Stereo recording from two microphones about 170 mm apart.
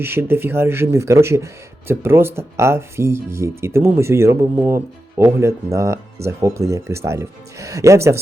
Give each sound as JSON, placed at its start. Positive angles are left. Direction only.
{"t": 0.0, "sound": "speech", "side_deg": -15}